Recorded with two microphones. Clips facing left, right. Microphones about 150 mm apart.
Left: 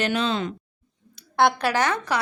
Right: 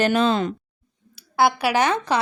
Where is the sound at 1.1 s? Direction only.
5° right (ahead or behind).